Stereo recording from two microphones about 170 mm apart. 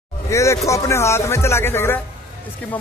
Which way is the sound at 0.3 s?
15° left (ahead or behind).